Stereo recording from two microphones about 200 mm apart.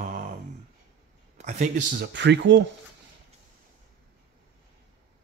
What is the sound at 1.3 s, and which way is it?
Speech, 35° right (ahead or behind).